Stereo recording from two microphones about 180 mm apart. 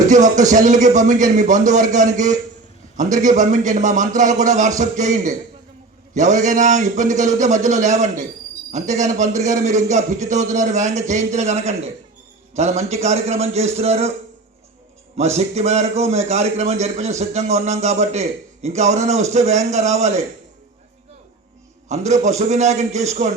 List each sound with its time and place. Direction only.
0.1 s a man's voice: 45° right (ahead or behind)
15.1 s a man's voice: 35° right (ahead or behind)
21.8 s a man's voice: 40° right (ahead or behind)